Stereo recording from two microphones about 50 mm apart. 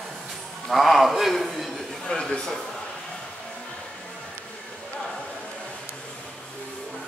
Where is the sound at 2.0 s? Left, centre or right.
Centre.